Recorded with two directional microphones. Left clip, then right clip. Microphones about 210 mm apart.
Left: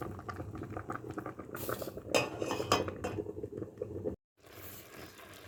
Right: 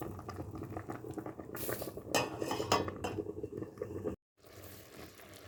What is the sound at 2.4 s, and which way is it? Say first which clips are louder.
Cutlery: left 1 dB; 15° left (ahead or behind).